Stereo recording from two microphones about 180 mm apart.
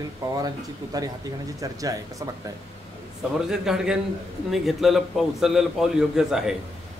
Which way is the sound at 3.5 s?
5° right (ahead or behind).